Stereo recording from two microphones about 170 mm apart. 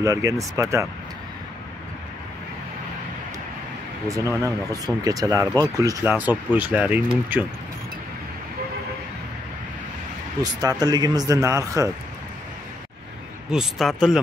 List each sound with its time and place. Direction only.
0.0 s speech: 20° right (ahead or behind)
4.1 s speech: 20° right (ahead or behind)
10.4 s speech: 20° right (ahead or behind)
13.5 s speech: centre (ahead or behind)